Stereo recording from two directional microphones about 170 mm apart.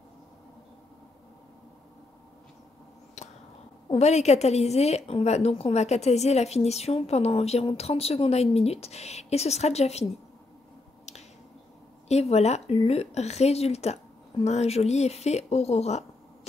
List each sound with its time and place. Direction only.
3.9 s a woman's voice: 40° left (ahead or behind)
12.1 s a woman's voice: 40° left (ahead or behind)